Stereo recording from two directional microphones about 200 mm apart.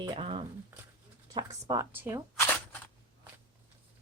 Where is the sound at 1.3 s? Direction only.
20° right (ahead or behind).